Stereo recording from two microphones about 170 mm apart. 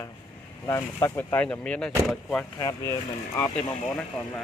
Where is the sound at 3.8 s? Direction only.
5° left (ahead or behind).